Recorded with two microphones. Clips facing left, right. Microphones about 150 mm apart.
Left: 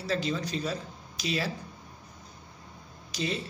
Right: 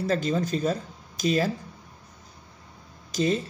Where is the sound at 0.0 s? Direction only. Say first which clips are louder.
Right 5 dB; 45° right (ahead or behind).